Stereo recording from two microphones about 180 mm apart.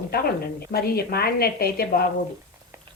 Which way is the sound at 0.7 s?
60° left (ahead or behind).